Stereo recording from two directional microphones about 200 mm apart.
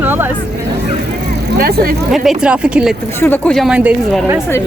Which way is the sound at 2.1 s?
5° right (ahead or behind).